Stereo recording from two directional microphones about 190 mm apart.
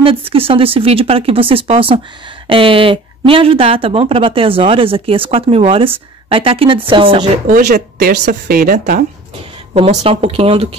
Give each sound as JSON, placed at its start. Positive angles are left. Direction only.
{"t": 0.0, "sound": "speech", "side_deg": -30}
{"t": 7.4, "sound": "speech", "side_deg": -55}
{"t": 9.8, "sound": "speech", "side_deg": -30}